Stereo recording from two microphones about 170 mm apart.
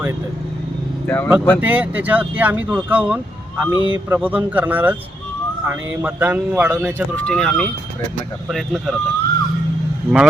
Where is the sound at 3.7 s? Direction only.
25° left (ahead or behind).